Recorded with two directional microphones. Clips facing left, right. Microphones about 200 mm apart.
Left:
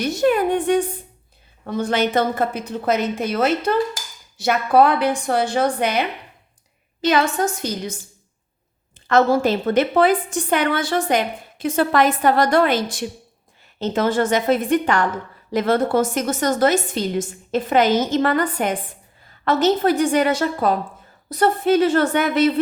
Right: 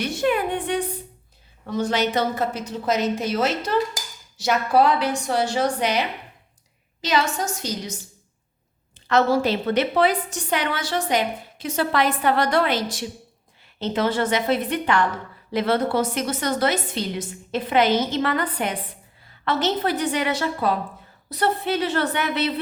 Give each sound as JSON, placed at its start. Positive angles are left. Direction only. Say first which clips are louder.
{"t": 0.0, "sound": "a woman's voice", "louder": "left 4 dB", "side_deg": 40}
{"t": 9.0, "sound": "a woman's voice", "louder": "left 3 dB", "side_deg": 50}